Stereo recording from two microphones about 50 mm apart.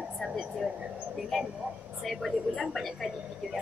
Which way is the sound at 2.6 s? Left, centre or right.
Centre.